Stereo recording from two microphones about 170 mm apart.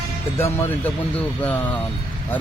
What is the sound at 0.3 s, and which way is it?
Speech, 15° left (ahead or behind).